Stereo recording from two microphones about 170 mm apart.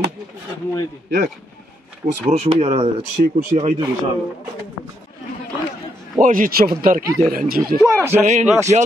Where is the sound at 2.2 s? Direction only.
40° right (ahead or behind).